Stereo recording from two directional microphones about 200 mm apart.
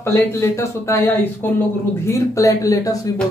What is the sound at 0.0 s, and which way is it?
Speech, 15° left (ahead or behind).